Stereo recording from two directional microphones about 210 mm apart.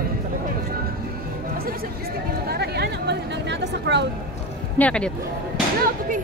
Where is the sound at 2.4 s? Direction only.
50° right (ahead or behind).